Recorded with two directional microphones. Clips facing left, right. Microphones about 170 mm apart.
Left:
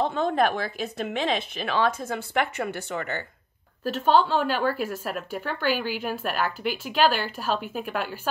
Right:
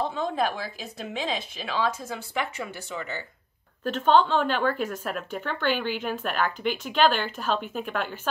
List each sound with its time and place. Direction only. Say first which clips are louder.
0.0 s a woman's voice: left 4 dB; 55° left (ahead or behind)
3.8 s speech: even; 5° left (ahead or behind)